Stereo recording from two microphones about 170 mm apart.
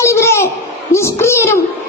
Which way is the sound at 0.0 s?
15° left (ahead or behind).